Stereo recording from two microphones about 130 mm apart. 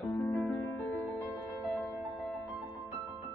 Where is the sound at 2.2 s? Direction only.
Centre (ahead or behind).